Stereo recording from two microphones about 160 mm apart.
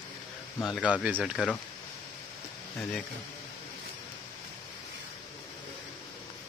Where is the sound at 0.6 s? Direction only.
Centre (ahead or behind).